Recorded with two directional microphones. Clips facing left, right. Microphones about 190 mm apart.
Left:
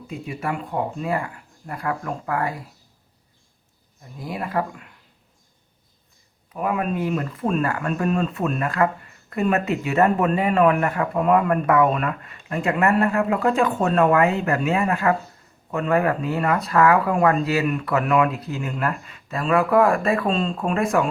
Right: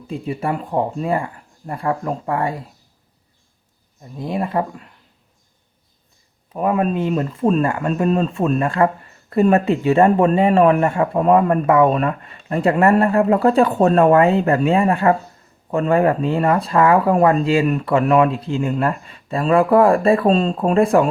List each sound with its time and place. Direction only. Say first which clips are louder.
0.1 s speech: right 5 dB; 30° right (ahead or behind)
4.2 s speech: right 5 dB; 25° right (ahead or behind)
6.5 s speech: right 5 dB; 30° right (ahead or behind)